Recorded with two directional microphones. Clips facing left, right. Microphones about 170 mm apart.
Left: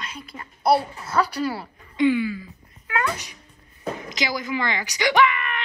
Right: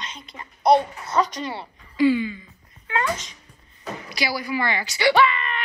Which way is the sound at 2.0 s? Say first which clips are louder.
Right 1 dB; 15° left (ahead or behind).